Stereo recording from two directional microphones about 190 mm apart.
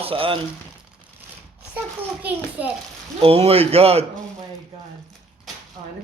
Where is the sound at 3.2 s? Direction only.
30° right (ahead or behind).